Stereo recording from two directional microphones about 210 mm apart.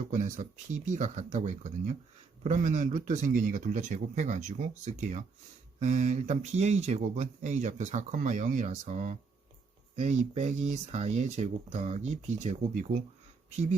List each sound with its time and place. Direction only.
0.1 s speech: 35° right (ahead or behind)